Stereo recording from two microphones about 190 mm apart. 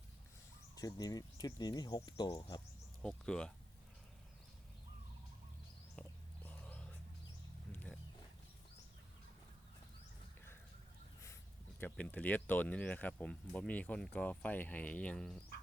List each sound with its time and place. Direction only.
0.8 s speech: 20° left (ahead or behind)
3.0 s speech: 5° left (ahead or behind)
6.0 s whispering: 5° left (ahead or behind)
7.7 s a sound: 10° left (ahead or behind)
11.8 s speech: 5° left (ahead or behind)